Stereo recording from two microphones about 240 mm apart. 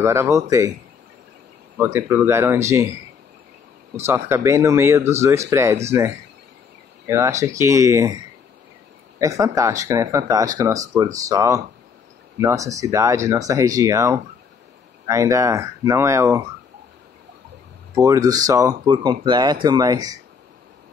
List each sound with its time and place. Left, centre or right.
0.0 s a man's voice: centre
1.8 s a man's voice: centre
3.9 s a man's voice: centre
9.2 s a man's voice: centre
17.9 s a man's voice: centre